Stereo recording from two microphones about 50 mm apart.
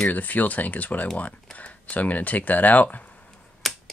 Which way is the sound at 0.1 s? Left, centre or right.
Left.